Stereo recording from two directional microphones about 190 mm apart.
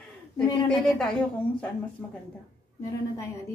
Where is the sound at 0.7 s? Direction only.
5° left (ahead or behind).